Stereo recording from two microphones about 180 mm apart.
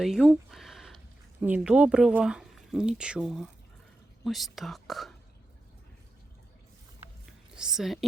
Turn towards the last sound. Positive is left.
turn(degrees=0)  # may be behind; listen again after turning